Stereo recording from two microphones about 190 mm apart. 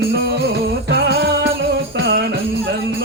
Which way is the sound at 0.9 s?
60° right (ahead or behind).